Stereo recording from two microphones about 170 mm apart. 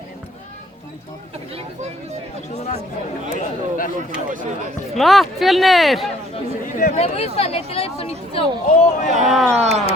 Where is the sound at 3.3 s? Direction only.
55° left (ahead or behind).